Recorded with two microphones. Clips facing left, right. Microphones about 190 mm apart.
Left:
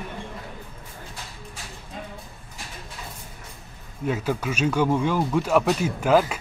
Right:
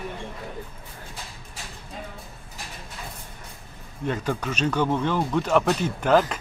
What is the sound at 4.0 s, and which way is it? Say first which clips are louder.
Speech: left 1 dB; 5° left (ahead or behind).